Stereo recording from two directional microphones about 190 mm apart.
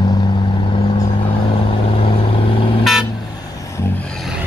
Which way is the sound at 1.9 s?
30° left (ahead or behind).